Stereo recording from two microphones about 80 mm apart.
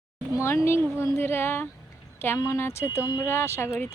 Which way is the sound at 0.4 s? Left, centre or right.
Left.